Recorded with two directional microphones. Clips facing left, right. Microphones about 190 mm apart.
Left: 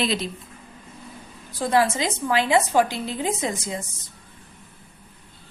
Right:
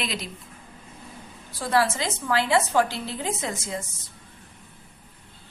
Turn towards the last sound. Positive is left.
turn(degrees=15)  # may be behind; listen again after turning